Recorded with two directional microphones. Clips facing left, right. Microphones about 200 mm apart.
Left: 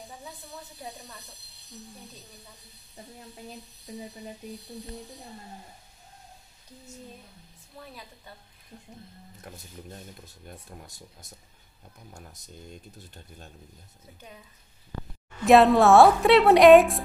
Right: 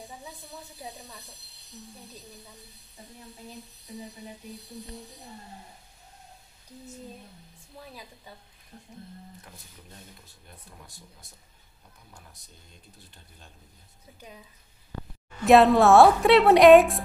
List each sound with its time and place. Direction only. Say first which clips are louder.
12.1 s speech: left 6 dB; 45° left (ahead or behind)
15.4 s a woman's voice: even; centre (ahead or behind)